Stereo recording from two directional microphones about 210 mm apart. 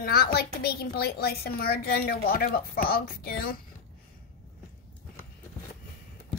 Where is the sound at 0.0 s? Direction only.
45° left (ahead or behind).